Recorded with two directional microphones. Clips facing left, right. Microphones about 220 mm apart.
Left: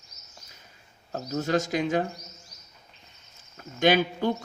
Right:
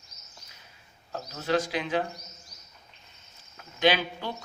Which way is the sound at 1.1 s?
45° left (ahead or behind).